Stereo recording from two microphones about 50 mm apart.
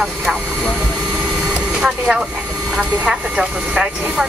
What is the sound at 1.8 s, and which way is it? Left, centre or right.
Speech, centre.